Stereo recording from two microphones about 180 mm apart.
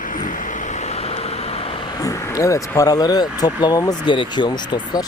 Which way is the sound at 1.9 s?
20° left (ahead or behind).